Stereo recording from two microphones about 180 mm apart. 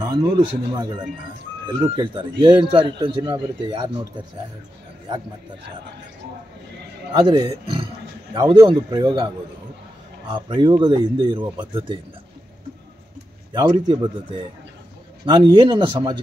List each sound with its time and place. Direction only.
0.0 s a sound: 20° right (ahead or behind)
0.7 s a man's voice: 25° right (ahead or behind)
7.1 s a man's voice: 25° right (ahead or behind)
10.3 s a man's voice: 25° right (ahead or behind)
13.5 s a man's voice: 25° right (ahead or behind)
15.2 s a man's voice: 25° right (ahead or behind)